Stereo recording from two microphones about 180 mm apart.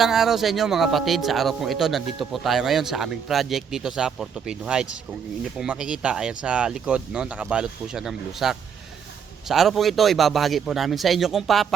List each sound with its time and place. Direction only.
0.0 s speech: centre (ahead or behind)